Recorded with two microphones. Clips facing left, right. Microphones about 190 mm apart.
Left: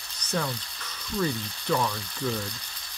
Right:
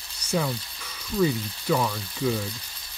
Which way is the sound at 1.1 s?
5° right (ahead or behind).